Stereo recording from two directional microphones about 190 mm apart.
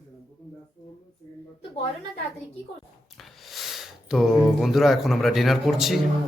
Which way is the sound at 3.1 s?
Centre (ahead or behind).